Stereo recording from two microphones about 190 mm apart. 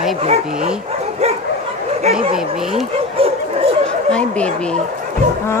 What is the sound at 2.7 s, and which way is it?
Dog, 30° right (ahead or behind).